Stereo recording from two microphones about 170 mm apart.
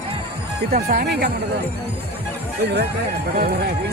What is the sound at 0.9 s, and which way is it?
Speech, 65° right (ahead or behind).